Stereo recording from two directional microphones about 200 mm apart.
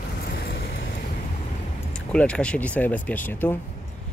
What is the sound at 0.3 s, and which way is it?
Vehicle, 60° left (ahead or behind).